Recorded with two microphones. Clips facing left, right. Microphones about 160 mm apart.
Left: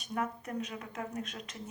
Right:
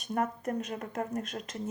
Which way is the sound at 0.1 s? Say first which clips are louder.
Right 5 dB; 45° right (ahead or behind).